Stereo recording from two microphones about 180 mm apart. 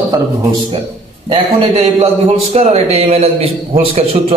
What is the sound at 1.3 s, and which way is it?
A man's voice, 35° right (ahead or behind).